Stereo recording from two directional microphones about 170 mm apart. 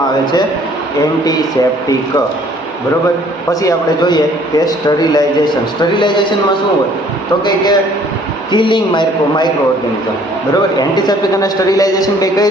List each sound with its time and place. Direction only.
3.5 s a man's voice: 20° left (ahead or behind)
7.4 s a man's voice: 25° left (ahead or behind)
10.8 s a man's voice: 25° left (ahead or behind)